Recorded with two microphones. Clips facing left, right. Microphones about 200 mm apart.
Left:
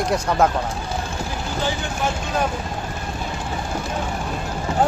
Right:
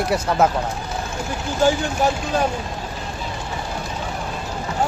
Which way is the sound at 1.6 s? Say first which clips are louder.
Right 9 dB; 45° right (ahead or behind).